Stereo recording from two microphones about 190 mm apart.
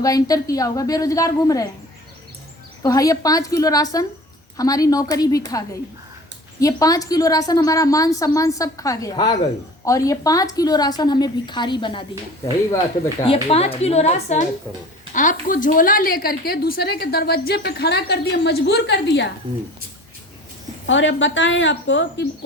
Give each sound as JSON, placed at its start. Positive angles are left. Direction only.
{"t": 0.0, "sound": "a woman's voice", "side_deg": 20}
{"t": 2.8, "sound": "a woman's voice", "side_deg": 15}
{"t": 6.6, "sound": "a woman's voice", "side_deg": 20}
{"t": 13.2, "sound": "a woman's voice", "side_deg": 30}
{"t": 20.8, "sound": "speech", "side_deg": 75}